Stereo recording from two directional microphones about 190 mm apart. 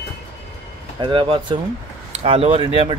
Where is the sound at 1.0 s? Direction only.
25° right (ahead or behind).